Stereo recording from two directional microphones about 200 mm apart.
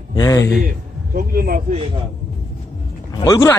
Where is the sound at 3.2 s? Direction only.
15° left (ahead or behind).